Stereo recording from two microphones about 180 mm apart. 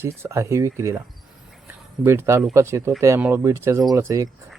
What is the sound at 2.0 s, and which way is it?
Speech, 15° right (ahead or behind).